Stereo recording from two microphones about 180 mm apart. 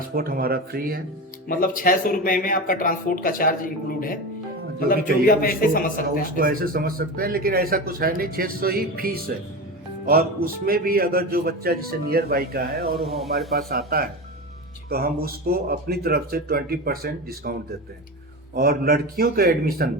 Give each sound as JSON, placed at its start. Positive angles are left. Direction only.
{"t": 0.1, "sound": "speech", "side_deg": -55}
{"t": 1.5, "sound": "speech", "side_deg": 50}
{"t": 6.4, "sound": "speech", "side_deg": -50}
{"t": 13.1, "sound": "a man's voice", "side_deg": 0}
{"t": 13.6, "sound": "speech", "side_deg": -55}